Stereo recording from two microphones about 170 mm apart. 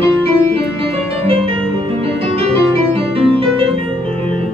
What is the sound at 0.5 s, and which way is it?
Music, 35° right (ahead or behind).